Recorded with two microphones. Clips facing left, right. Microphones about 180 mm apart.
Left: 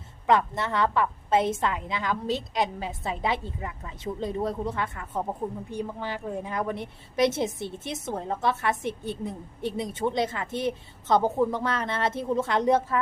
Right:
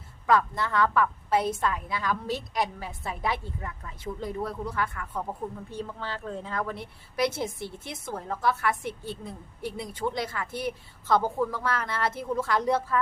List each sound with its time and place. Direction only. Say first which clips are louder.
0.3 s a woman's voice: left 1 dB; 20° left (ahead or behind)